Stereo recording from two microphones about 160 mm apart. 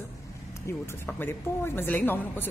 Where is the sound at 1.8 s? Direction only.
10° left (ahead or behind).